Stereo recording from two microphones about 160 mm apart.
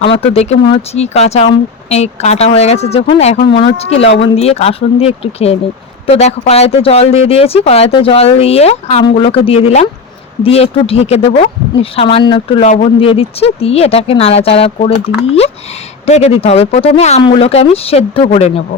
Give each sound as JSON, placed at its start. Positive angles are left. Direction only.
{"t": 0.2, "sound": "speech", "side_deg": 40}